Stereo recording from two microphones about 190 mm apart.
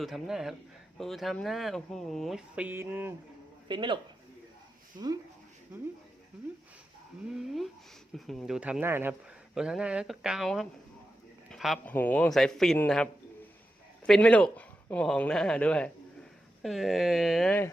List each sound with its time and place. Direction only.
0.0 s speech: centre (ahead or behind)
3.7 s speech: 25° right (ahead or behind)
8.1 s a man's voice: centre (ahead or behind)